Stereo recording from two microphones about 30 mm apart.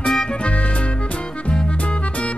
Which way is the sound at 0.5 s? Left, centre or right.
Left.